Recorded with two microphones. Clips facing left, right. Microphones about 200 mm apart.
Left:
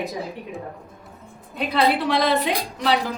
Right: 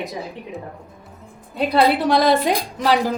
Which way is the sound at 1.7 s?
40° right (ahead or behind).